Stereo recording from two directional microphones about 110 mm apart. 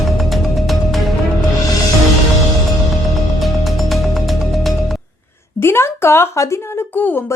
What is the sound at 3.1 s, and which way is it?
Music, centre (ahead or behind).